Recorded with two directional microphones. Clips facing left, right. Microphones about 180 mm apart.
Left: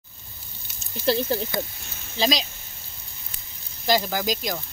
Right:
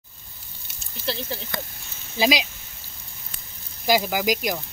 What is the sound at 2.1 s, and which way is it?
Speech, 10° right (ahead or behind).